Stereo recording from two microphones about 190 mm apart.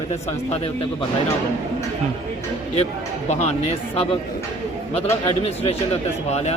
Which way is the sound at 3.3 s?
35° left (ahead or behind).